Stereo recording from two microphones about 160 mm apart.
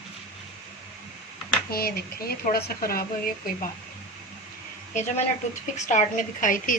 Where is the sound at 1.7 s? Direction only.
70° left (ahead or behind).